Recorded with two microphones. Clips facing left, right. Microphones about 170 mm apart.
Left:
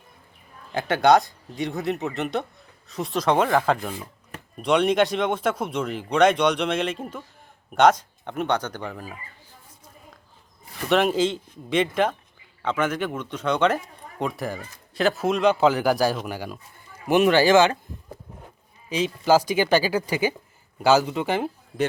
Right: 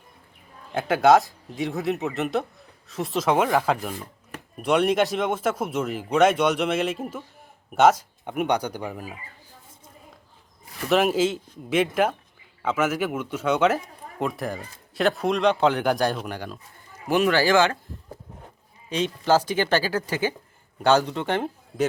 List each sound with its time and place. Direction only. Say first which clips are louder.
0.7 s speech: right 1 dB; centre (ahead or behind)
10.8 s speech: even; 5° right (ahead or behind)
17.1 s speech: left 3 dB; 20° left (ahead or behind)
18.9 s speech: left 2 dB; 5° left (ahead or behind)